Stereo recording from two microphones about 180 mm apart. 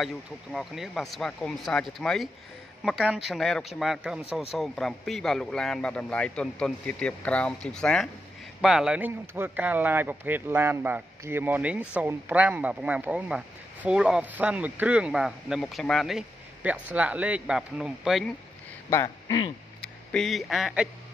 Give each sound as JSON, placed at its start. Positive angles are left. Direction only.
{"t": 0.0, "sound": "speech", "side_deg": 0}
{"t": 18.9, "sound": "speech", "side_deg": 20}
{"t": 20.1, "sound": "speech", "side_deg": 0}